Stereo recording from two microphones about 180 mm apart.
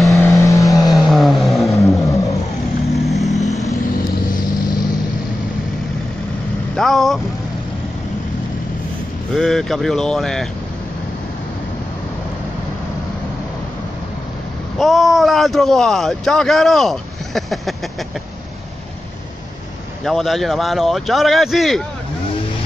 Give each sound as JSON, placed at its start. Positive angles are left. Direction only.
{"t": 0.2, "sound": "vehicle", "side_deg": 15}
{"t": 0.9, "sound": "vehicle", "side_deg": 0}
{"t": 1.8, "sound": "vehicle", "side_deg": 15}
{"t": 2.9, "sound": "vehicle", "side_deg": 0}
{"t": 6.7, "sound": "vehicle", "side_deg": 0}
{"t": 9.3, "sound": "speech", "side_deg": 0}
{"t": 14.8, "sound": "speech", "side_deg": 0}
{"t": 20.1, "sound": "speech", "side_deg": 0}